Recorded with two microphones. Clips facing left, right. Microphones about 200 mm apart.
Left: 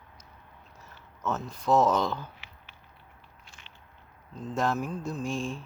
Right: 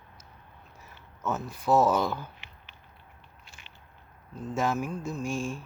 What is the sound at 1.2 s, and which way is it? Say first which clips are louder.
Speech: even; 10° right (ahead or behind).